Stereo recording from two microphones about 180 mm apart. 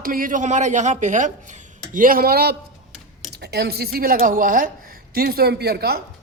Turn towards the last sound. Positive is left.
turn(degrees=-60)  # may be behind; listen again after turning